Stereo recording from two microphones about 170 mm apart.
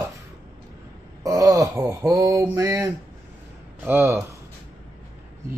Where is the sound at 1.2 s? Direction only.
20° right (ahead or behind).